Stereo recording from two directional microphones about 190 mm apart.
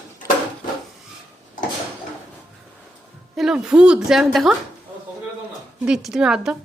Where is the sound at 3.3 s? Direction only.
Centre (ahead or behind).